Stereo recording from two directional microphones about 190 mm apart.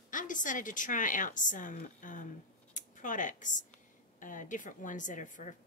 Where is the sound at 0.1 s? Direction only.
45° left (ahead or behind).